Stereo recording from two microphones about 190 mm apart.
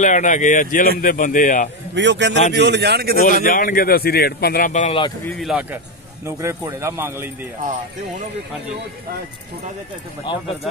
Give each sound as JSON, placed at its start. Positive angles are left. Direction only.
{"t": 0.0, "sound": "speech", "side_deg": 40}
{"t": 2.0, "sound": "speech", "side_deg": -70}
{"t": 3.4, "sound": "speech", "side_deg": 45}
{"t": 5.4, "sound": "a man's voice", "side_deg": -5}
{"t": 6.2, "sound": "a man's voice", "side_deg": -15}